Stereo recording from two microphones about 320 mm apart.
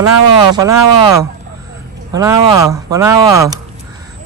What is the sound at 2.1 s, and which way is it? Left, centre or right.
Speech, centre.